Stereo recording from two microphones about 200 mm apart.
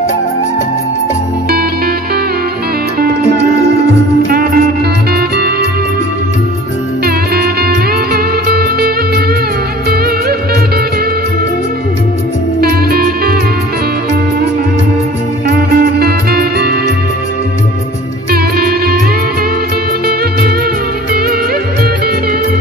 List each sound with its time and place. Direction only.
4.3 s music: 45° right (ahead or behind)
7.3 s music: 50° right (ahead or behind)
12.5 s music: 50° right (ahead or behind)
16.0 s music: 50° right (ahead or behind)
18.3 s music: 50° right (ahead or behind)